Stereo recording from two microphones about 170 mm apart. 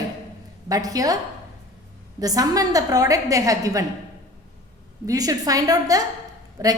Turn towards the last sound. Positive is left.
turn(degrees=-20)  # may be behind; listen again after turning